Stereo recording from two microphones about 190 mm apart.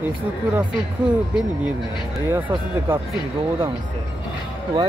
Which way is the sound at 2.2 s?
10° right (ahead or behind).